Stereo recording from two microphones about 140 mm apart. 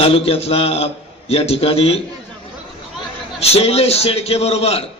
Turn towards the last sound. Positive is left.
turn(degrees=45)  # may be behind; listen again after turning